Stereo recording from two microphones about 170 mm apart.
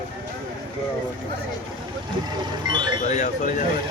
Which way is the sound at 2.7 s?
25° right (ahead or behind).